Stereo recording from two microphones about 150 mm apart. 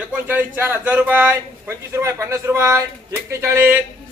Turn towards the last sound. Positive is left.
turn(degrees=-15)  # may be behind; listen again after turning